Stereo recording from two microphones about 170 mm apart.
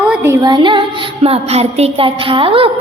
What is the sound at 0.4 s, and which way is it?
Music, 25° right (ahead or behind).